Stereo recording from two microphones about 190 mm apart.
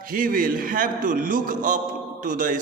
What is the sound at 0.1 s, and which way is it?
A man's voice, 45° right (ahead or behind).